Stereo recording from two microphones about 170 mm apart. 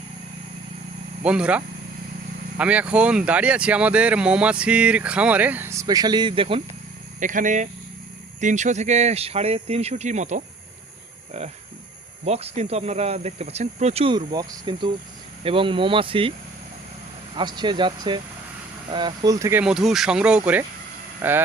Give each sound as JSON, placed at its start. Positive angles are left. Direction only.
{"t": 1.2, "sound": "speech", "side_deg": -5}
{"t": 7.2, "sound": "speech", "side_deg": -50}
{"t": 17.3, "sound": "speech", "side_deg": -25}
{"t": 19.6, "sound": "speech", "side_deg": 0}